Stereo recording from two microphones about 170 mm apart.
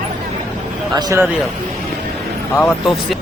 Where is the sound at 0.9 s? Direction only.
20° right (ahead or behind).